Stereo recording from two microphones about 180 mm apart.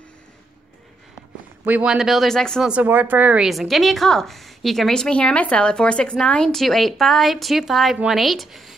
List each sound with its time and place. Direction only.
1.6 s a woman's voice: 10° right (ahead or behind)
2.7 s a woman's voice: 10° right (ahead or behind)